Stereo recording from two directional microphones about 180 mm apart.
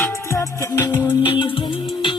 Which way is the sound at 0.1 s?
15° left (ahead or behind).